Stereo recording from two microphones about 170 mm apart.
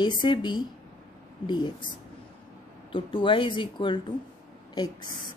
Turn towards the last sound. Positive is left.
turn(degrees=25)  # may be behind; listen again after turning